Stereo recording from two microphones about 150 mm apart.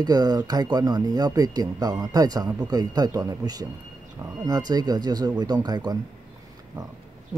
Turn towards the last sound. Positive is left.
turn(degrees=-25)  # may be behind; listen again after turning